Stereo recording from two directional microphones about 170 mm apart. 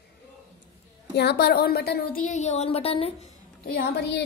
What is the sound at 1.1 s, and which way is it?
Speech, 75° left (ahead or behind).